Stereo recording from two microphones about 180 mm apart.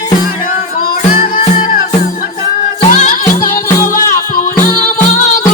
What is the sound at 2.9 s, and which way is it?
Music, 50° left (ahead or behind).